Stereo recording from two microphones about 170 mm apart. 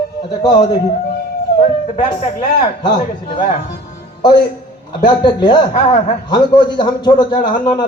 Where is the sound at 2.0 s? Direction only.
25° left (ahead or behind).